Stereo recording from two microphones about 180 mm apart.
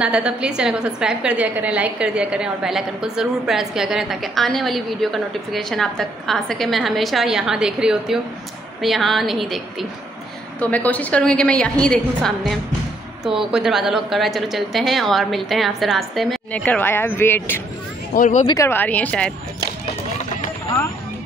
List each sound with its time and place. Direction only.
0.0 s a woman's voice: 5° right (ahead or behind); by 17.6 s 10° left (ahead or behind)
18.1 s speech: 45° left (ahead or behind)
18.5 s a woman's voice: 15° left (ahead or behind)